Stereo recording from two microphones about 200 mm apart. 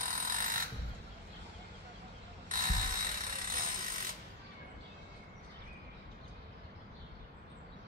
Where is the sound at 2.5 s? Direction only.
45° right (ahead or behind).